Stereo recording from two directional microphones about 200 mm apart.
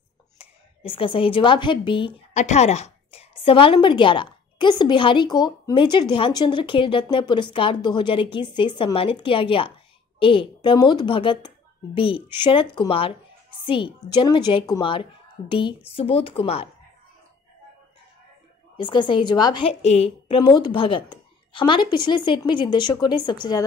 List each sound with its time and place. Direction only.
0.4 s a woman's voice: 25° left (ahead or behind)
18.8 s a woman's voice: 25° left (ahead or behind)